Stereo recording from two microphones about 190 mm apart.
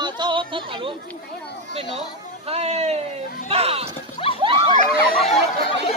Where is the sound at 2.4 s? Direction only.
35° right (ahead or behind).